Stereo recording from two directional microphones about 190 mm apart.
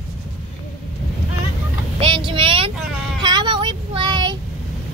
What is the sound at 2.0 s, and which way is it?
Vehicle, 25° right (ahead or behind).